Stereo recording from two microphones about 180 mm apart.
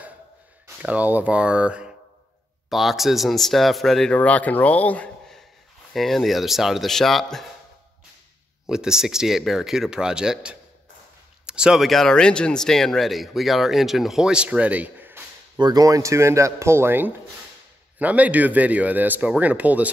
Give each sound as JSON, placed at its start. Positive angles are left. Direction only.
{"t": 0.8, "sound": "speech", "side_deg": -10}
{"t": 8.6, "sound": "speech", "side_deg": -5}
{"t": 15.5, "sound": "speech", "side_deg": -20}